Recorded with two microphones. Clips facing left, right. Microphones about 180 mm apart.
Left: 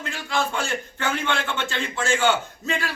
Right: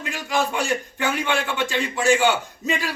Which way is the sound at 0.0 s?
15° right (ahead or behind).